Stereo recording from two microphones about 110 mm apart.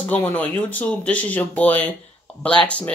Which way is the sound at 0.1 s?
15° left (ahead or behind).